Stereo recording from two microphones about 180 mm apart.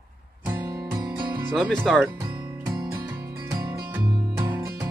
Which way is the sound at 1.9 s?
Centre (ahead or behind).